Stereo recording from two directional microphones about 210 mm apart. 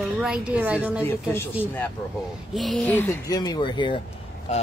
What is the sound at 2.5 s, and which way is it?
Speech, centre (ahead or behind).